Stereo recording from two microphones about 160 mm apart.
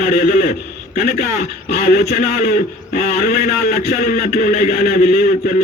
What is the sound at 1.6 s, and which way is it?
Speech, 75° left (ahead or behind).